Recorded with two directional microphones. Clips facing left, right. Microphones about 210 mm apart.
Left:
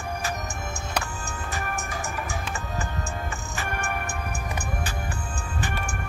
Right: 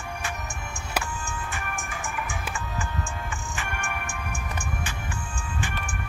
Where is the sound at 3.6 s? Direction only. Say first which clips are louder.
Left 5 dB; 40° left (ahead or behind).